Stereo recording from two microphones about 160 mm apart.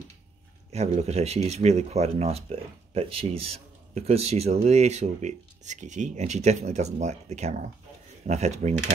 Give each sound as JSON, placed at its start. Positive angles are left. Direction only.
{"t": 0.7, "sound": "speech", "side_deg": -40}